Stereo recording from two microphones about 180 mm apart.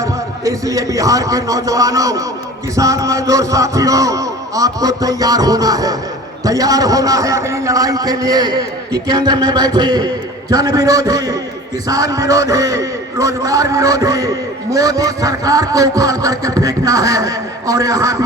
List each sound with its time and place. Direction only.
0.0 s a man's voice: 20° right (ahead or behind)